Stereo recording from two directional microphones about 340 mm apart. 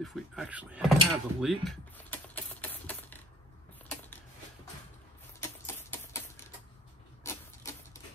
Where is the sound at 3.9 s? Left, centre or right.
Centre.